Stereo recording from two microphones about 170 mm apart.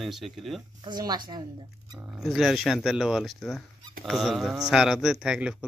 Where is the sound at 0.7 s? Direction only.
25° right (ahead or behind).